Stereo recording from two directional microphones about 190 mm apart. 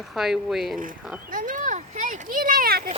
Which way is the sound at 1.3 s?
45° right (ahead or behind).